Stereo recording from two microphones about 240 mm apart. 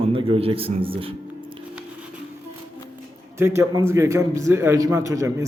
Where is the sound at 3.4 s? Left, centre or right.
Centre.